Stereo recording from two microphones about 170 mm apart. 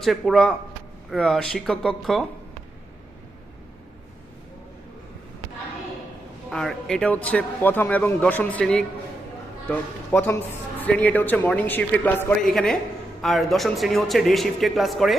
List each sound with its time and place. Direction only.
0.0 s a man's voice: centre (ahead or behind)
6.5 s a man's voice: 5° left (ahead or behind)
13.2 s a man's voice: centre (ahead or behind)